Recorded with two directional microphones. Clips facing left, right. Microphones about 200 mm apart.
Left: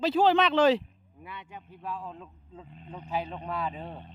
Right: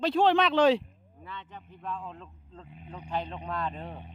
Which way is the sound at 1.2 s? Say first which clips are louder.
Even; 10° left (ahead or behind).